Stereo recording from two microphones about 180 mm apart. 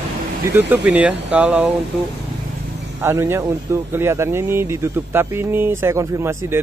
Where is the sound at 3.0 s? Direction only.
15° right (ahead or behind).